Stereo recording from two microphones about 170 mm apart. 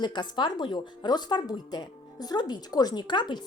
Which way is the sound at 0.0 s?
25° left (ahead or behind).